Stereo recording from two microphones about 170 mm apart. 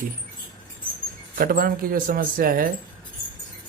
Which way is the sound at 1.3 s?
60° right (ahead or behind).